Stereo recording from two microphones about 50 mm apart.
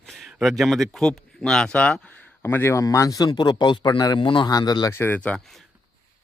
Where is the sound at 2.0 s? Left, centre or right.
Left.